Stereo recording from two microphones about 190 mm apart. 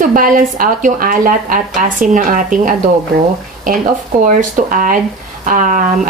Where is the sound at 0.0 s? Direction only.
45° right (ahead or behind).